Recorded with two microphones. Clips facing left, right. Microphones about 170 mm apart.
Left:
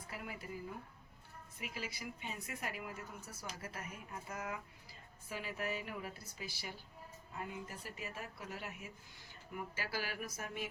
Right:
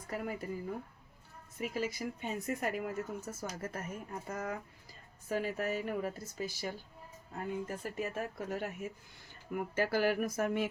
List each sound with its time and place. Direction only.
0.1 s speech: 45° right (ahead or behind)
1.5 s speech: 45° right (ahead or behind)